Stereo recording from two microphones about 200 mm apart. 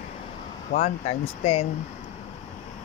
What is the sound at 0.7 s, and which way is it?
Speech, 35° left (ahead or behind).